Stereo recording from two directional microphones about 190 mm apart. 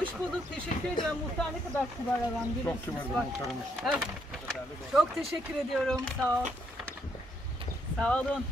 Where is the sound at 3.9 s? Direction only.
5° right (ahead or behind).